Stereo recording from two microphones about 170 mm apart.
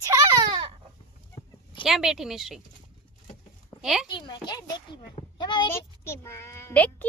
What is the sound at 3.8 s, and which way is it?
Speech, 5° right (ahead or behind).